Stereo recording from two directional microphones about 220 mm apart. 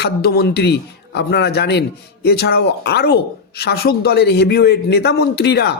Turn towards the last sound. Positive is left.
turn(degrees=50)  # may be behind; listen again after turning